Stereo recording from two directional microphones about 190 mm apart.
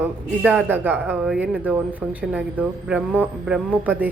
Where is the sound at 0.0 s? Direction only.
10° right (ahead or behind).